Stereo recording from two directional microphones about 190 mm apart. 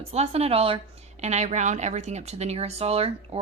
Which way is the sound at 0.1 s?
35° right (ahead or behind).